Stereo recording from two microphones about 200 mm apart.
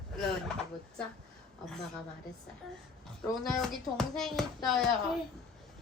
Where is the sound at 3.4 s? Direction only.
Centre (ahead or behind).